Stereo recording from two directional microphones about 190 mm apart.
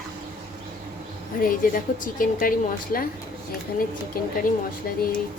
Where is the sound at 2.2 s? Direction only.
50° left (ahead or behind).